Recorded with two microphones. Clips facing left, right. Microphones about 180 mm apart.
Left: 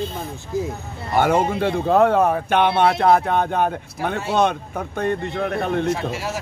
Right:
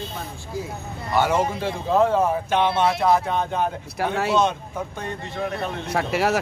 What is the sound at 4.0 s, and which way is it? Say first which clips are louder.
Speech: even; 75° right (ahead or behind).